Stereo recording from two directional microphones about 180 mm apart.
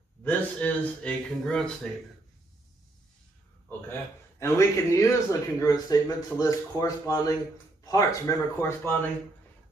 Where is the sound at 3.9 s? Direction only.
15° left (ahead or behind).